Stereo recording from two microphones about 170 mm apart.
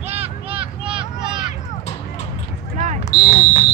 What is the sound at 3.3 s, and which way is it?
Speech, 50° left (ahead or behind).